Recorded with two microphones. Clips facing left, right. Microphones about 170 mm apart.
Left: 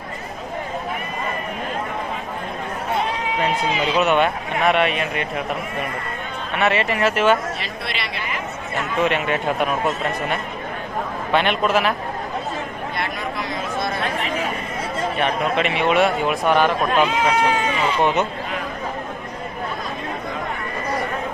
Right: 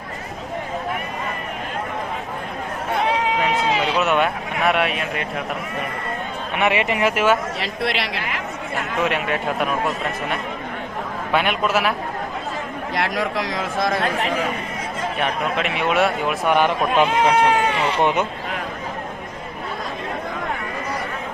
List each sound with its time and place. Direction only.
3.0 s run: 75° right (ahead or behind)
3.9 s speech: centre (ahead or behind)
6.6 s speech: 15° right (ahead or behind)
7.6 s speech: 90° right
9.0 s speech: 5° right (ahead or behind)
13.0 s speech: 90° right
15.2 s speech: centre (ahead or behind)
17.1 s speech: 60° right (ahead or behind)
18.0 s speech: 10° right (ahead or behind)